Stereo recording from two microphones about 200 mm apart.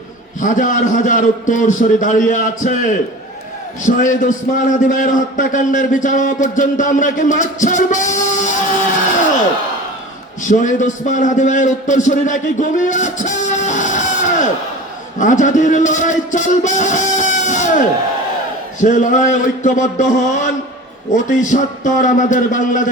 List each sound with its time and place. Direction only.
0.3 s a man's voice: 40° left (ahead or behind)
3.8 s a man's voice: 40° left (ahead or behind)
10.4 s a man's voice: 40° left (ahead or behind)